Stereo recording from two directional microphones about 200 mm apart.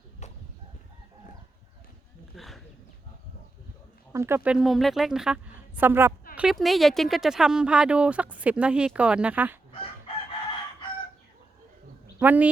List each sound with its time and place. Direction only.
0.2 s chicken: 35° left (ahead or behind)
2.3 s a sound: centre (ahead or behind)
4.1 s speech: 15° right (ahead or behind)
12.2 s speech: 10° right (ahead or behind)